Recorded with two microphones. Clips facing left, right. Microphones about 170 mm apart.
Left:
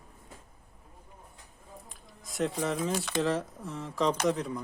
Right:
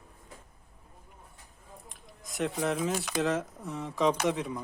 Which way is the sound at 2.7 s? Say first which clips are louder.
Even; 5° right (ahead or behind).